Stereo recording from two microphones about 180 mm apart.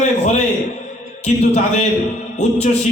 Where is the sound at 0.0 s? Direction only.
40° left (ahead or behind).